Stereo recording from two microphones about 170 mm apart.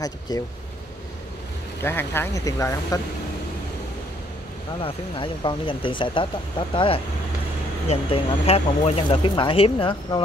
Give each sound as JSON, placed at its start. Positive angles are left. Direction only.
{"t": 0.3, "sound": "speech", "side_deg": 25}
{"t": 1.8, "sound": "speech", "side_deg": 15}
{"t": 4.7, "sound": "speech", "side_deg": 35}